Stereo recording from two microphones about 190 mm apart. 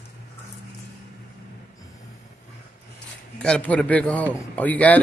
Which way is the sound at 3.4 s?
5° left (ahead or behind).